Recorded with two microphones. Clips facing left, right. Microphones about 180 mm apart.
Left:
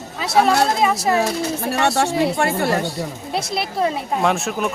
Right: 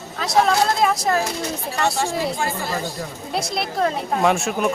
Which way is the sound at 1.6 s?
70° left (ahead or behind).